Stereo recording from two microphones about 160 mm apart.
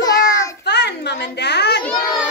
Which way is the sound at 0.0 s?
20° left (ahead or behind).